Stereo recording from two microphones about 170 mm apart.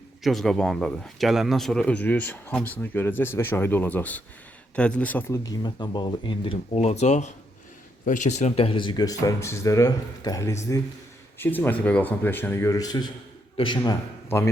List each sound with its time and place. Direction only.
0.2 s speech: centre (ahead or behind)
5.4 s speech: 25° left (ahead or behind)